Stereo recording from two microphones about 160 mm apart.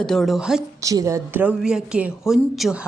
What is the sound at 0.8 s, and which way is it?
A woman's voice, 20° right (ahead or behind).